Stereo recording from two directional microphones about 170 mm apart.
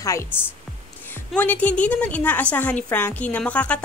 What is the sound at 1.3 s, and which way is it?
A woman's voice, 10° left (ahead or behind).